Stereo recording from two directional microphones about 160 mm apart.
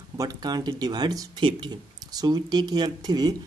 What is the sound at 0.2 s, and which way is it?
A man's voice, 25° right (ahead or behind).